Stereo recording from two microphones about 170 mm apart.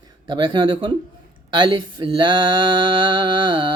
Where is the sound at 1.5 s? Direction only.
25° right (ahead or behind).